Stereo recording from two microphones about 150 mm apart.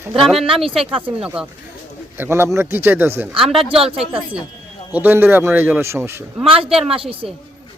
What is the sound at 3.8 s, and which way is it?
Speech, 40° right (ahead or behind).